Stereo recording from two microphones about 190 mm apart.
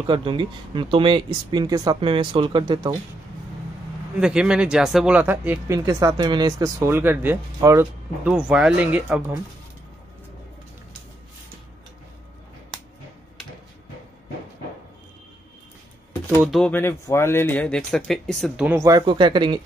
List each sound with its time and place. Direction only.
0.0 s speech: 25° right (ahead or behind)
4.2 s speech: 5° right (ahead or behind)
16.3 s speech: centre (ahead or behind)
16.7 s speech: 15° left (ahead or behind)
18.7 s speech: 15° right (ahead or behind)